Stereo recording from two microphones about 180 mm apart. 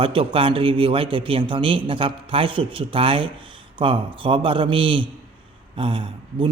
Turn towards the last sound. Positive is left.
turn(degrees=-30)  # may be behind; listen again after turning